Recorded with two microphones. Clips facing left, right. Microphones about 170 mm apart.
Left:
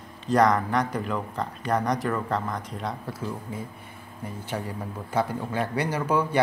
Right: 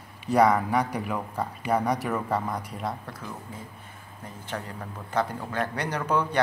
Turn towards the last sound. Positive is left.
turn(degrees=5)  # may be behind; listen again after turning